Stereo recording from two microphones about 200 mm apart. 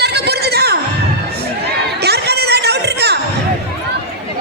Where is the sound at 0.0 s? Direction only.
55° right (ahead or behind).